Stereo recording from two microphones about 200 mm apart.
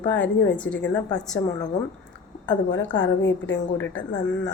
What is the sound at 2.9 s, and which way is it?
Speech, 65° left (ahead or behind).